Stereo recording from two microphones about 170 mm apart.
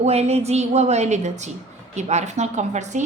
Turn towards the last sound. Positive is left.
turn(degrees=-45)  # may be behind; listen again after turning